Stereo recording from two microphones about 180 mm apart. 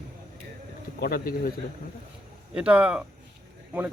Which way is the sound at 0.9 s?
60° left (ahead or behind).